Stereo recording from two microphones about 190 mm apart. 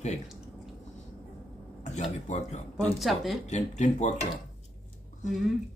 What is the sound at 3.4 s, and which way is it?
Speech, 40° left (ahead or behind).